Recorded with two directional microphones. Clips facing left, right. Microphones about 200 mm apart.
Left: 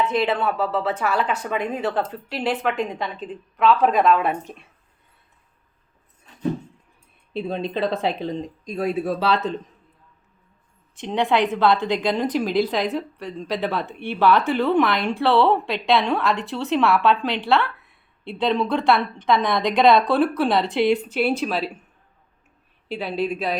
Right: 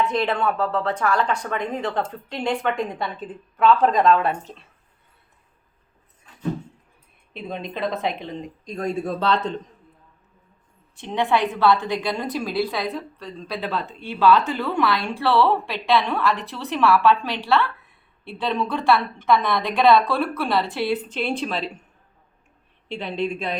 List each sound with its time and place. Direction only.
0.0 s speech: 5° left (ahead or behind)
4.1 s speech: 15° left (ahead or behind)
7.3 s speech: 30° left (ahead or behind)
8.6 s speech: 5° left (ahead or behind)
10.9 s speech: 20° left (ahead or behind)
22.9 s speech: 5° left (ahead or behind)